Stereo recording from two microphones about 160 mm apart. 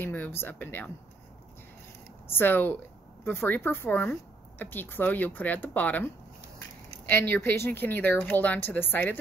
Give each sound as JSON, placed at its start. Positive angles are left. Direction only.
{"t": 0.0, "sound": "speech", "side_deg": 10}
{"t": 2.2, "sound": "speech", "side_deg": 15}
{"t": 7.1, "sound": "speech", "side_deg": 15}